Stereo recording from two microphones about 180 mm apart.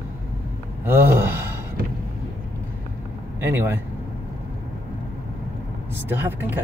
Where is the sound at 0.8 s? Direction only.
15° right (ahead or behind).